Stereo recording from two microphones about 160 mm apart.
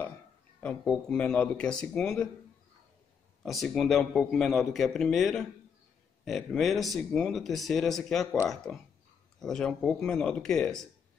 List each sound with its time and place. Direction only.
0.6 s speech: 5° left (ahead or behind)
3.4 s speech: centre (ahead or behind)
9.4 s speech: 5° left (ahead or behind)